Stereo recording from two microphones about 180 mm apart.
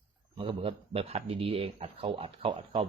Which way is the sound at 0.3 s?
30° right (ahead or behind).